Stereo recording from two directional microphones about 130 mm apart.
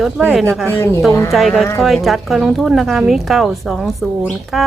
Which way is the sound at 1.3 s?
Centre (ahead or behind).